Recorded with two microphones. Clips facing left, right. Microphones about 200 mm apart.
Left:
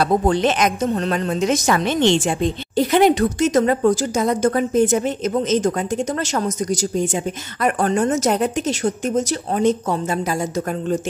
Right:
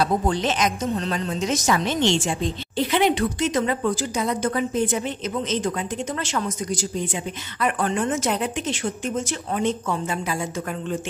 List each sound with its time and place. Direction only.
0.0 s a woman's voice: 60° left (ahead or behind)
2.7 s a woman's voice: 45° left (ahead or behind)